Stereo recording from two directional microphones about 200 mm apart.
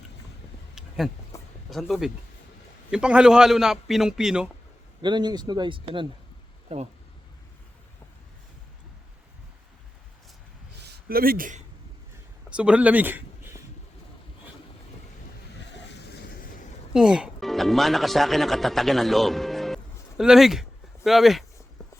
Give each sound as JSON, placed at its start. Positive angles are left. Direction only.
{"t": 0.8, "sound": "a sound", "side_deg": 0}
{"t": 1.3, "sound": "a sound", "side_deg": 15}
{"t": 1.7, "sound": "a man's voice", "side_deg": 0}
{"t": 5.0, "sound": "speech", "side_deg": -20}
{"t": 10.8, "sound": "speech", "side_deg": -50}
{"t": 12.5, "sound": "speech", "side_deg": -5}
{"t": 16.9, "sound": "speech", "side_deg": -5}